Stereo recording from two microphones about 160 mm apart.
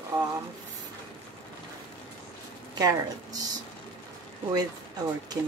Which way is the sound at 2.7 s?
25° right (ahead or behind).